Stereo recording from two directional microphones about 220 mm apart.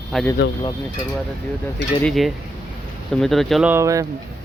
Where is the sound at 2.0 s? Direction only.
Centre (ahead or behind); by 4.0 s 15° right (ahead or behind).